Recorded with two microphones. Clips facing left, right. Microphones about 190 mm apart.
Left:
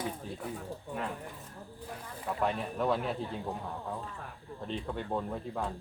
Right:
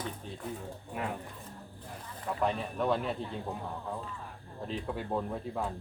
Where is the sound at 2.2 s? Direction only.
Centre (ahead or behind).